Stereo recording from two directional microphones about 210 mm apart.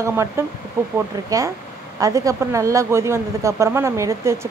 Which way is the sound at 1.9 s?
15° right (ahead or behind).